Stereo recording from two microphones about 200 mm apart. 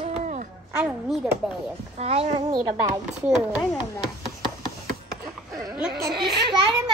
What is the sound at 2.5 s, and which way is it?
Speech, 20° right (ahead or behind).